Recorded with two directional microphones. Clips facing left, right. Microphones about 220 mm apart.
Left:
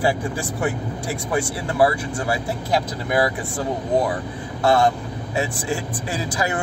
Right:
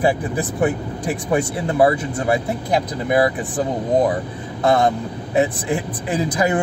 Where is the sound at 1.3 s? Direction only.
20° right (ahead or behind).